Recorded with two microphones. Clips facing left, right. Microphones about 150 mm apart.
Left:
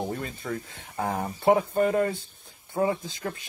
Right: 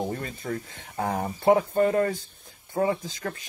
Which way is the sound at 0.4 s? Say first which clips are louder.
Right 1 dB; 40° right (ahead or behind).